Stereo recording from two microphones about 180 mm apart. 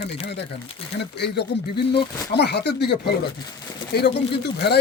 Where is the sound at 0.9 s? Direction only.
70° left (ahead or behind).